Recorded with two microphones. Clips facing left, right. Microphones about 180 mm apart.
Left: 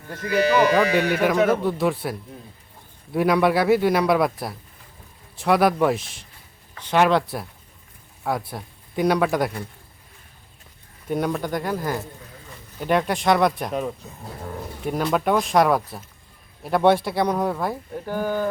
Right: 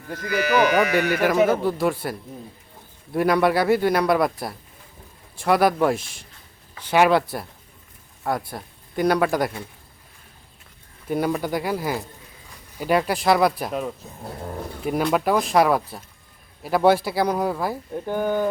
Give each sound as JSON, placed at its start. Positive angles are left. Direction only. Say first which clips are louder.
{"t": 0.1, "sound": "speech", "louder": "left 2 dB", "side_deg": 25}
{"t": 1.2, "sound": "a man's voice", "louder": "right 2 dB", "side_deg": -5}
{"t": 11.1, "sound": "a man's voice", "louder": "right 1 dB", "side_deg": -5}
{"t": 18.0, "sound": "speech", "louder": "right 2 dB", "side_deg": -20}